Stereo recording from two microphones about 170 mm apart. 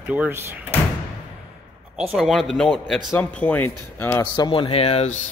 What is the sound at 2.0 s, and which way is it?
A man's voice, centre (ahead or behind).